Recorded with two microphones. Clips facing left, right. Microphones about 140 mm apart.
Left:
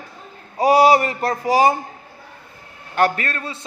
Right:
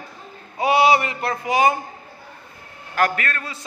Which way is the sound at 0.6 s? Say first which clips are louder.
Left 3 dB; 40° left (ahead or behind).